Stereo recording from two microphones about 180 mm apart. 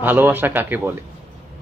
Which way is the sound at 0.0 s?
10° right (ahead or behind).